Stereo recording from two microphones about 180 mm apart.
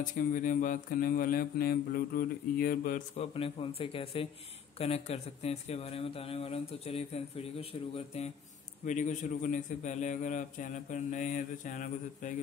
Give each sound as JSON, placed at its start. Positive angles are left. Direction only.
{"t": 0.0, "sound": "a man's voice", "side_deg": 45}
{"t": 3.2, "sound": "a man's voice", "side_deg": 30}